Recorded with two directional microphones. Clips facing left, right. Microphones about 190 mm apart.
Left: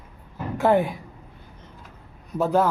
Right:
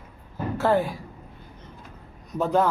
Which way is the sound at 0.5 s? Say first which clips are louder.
Left 3 dB; 15° left (ahead or behind).